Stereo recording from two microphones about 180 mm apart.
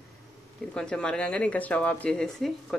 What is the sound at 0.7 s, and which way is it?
Speech, 5° left (ahead or behind).